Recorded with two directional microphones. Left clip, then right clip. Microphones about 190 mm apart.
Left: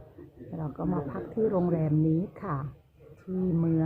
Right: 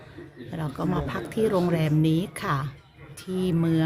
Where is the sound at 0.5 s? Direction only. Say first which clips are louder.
Right 4 dB; 35° right (ahead or behind).